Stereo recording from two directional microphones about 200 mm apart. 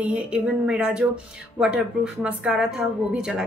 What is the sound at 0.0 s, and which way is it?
A woman's voice, 5° right (ahead or behind).